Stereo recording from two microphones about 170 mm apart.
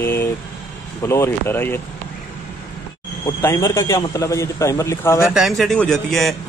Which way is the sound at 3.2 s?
15° left (ahead or behind).